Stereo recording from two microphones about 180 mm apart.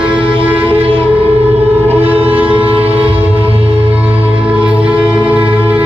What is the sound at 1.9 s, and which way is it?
Music, 10° right (ahead or behind).